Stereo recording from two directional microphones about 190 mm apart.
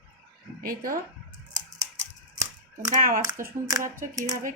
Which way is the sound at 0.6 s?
50° right (ahead or behind).